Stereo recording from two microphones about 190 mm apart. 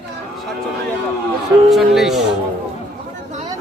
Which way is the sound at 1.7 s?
Centre (ahead or behind).